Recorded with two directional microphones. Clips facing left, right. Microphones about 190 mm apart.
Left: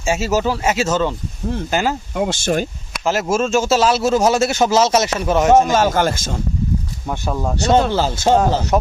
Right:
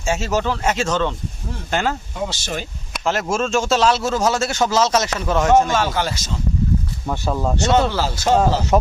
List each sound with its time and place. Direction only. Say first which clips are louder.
0.0 s a man's voice: left 3 dB; 10° left (ahead or behind)
2.1 s speech: left 7 dB; 55° left (ahead or behind)
2.9 s a man's voice: left 2 dB; 5° left (ahead or behind)
5.0 s speech: left 3 dB; 20° left (ahead or behind)
5.7 s speech: left 5 dB; 45° left (ahead or behind)
7.1 s a man's voice: even; 5° left (ahead or behind)
7.9 s speech: left 4 dB; 25° left (ahead or behind)
8.4 s speech: even; centre (ahead or behind)